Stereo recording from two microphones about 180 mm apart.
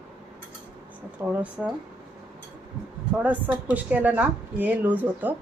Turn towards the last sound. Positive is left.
turn(degrees=-10)  # may be behind; listen again after turning